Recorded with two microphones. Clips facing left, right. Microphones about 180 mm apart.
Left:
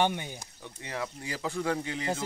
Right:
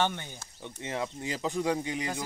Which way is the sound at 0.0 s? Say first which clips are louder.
Left 2 dB; 15° left (ahead or behind).